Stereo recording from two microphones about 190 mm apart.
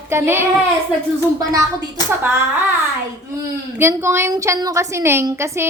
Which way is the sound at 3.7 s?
15° right (ahead or behind).